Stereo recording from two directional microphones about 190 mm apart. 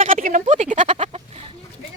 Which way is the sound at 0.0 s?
45° right (ahead or behind).